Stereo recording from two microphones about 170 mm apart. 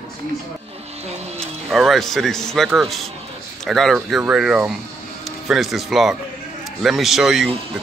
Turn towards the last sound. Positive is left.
turn(degrees=0)  # may be behind; listen again after turning